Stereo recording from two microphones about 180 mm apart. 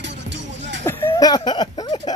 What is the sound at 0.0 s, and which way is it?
Music, 85° right.